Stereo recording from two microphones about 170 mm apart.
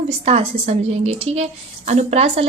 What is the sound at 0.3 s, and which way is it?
A woman's voice, 35° right (ahead or behind).